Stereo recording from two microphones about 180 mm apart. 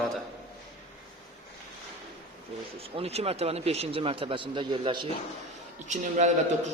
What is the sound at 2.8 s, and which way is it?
A man's voice, 35° right (ahead or behind).